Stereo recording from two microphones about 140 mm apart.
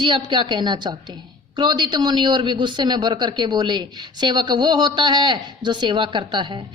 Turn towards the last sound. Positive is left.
turn(degrees=-35)  # may be behind; listen again after turning